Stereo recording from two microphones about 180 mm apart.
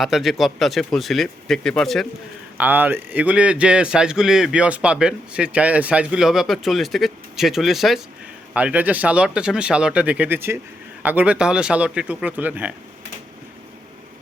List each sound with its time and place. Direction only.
0.0 s a man's voice: centre (ahead or behind)
2.6 s a man's voice: 10° right (ahead or behind)